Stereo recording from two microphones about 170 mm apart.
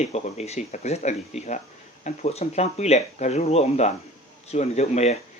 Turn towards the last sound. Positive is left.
turn(degrees=40)  # may be behind; listen again after turning